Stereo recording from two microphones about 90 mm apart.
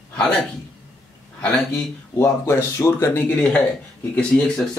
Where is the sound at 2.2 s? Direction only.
30° left (ahead or behind).